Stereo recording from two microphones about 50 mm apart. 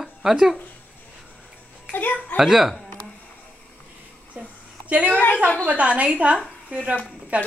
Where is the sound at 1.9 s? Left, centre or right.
Left.